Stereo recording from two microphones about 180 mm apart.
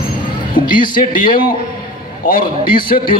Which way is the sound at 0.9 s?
50° left (ahead or behind).